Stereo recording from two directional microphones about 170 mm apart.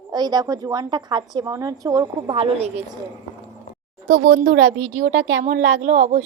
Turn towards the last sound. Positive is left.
turn(degrees=-45)  # may be behind; listen again after turning